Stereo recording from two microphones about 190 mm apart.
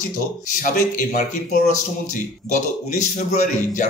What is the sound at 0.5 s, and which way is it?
Speech, 45° left (ahead or behind).